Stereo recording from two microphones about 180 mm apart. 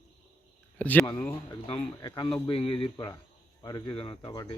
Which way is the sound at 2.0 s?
20° left (ahead or behind).